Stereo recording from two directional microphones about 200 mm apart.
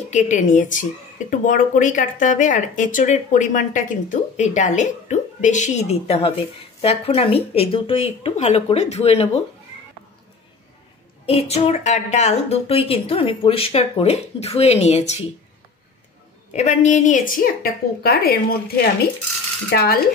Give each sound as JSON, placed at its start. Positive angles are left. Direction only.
{"t": 0.1, "sound": "speech", "side_deg": 40}
{"t": 11.2, "sound": "speech", "side_deg": 30}
{"t": 16.5, "sound": "a woman's voice", "side_deg": 35}